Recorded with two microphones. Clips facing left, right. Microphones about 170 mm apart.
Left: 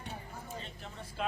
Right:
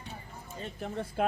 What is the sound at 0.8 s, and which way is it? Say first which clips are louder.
Speech: right 11 dB; 55° right (ahead or behind).